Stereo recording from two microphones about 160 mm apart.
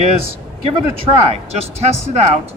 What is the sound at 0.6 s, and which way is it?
Speech, 35° right (ahead or behind).